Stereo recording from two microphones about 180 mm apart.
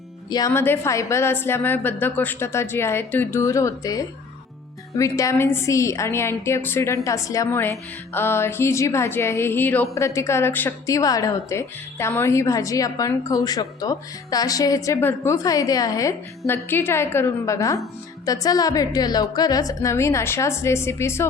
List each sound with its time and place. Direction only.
0.3 s a woman's voice: 20° left (ahead or behind)